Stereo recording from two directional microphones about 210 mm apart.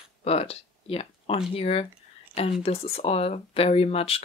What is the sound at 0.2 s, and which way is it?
Speech, 30° left (ahead or behind).